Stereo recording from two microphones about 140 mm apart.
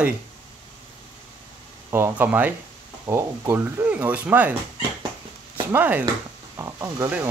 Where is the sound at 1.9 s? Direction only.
15° right (ahead or behind).